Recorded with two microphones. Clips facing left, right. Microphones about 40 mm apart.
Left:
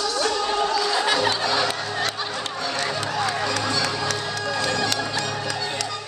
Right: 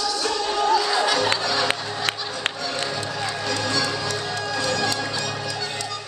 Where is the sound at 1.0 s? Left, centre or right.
Left.